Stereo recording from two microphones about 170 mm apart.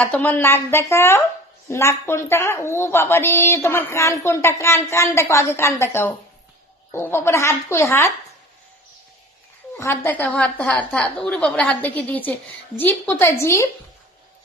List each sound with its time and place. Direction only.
0.0 s a woman's voice: 10° left (ahead or behind)
9.7 s a woman's voice: 15° left (ahead or behind)